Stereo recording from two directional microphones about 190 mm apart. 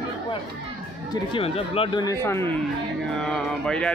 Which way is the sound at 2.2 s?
15° left (ahead or behind).